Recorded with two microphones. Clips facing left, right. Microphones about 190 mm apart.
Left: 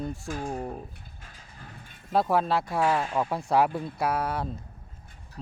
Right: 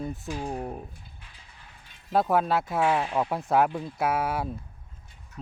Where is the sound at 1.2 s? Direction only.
45° left (ahead or behind).